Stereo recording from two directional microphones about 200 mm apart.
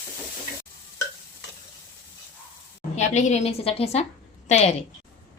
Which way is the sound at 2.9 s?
35° left (ahead or behind).